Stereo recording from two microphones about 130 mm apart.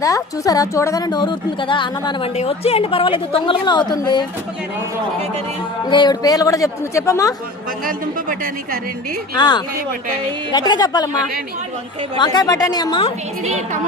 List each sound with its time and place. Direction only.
0.0 s a woman's voice: 25° left (ahead or behind)
2.3 s a woman's voice: 55° left (ahead or behind); by 4.3 s 30° left (ahead or behind)
5.9 s a woman's voice: 35° left (ahead or behind)
9.3 s a woman's voice: 35° left (ahead or behind)
12.1 s a woman's voice: 35° left (ahead or behind)